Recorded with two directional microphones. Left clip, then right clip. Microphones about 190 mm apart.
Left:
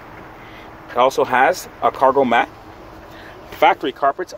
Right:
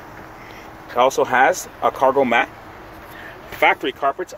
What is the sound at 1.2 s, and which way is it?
Speech, 10° left (ahead or behind).